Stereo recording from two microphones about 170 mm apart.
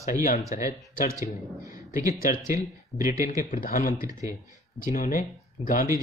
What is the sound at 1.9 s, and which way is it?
Speech, 20° right (ahead or behind).